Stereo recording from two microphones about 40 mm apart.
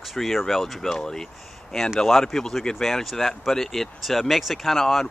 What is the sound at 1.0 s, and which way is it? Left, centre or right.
Speech, centre.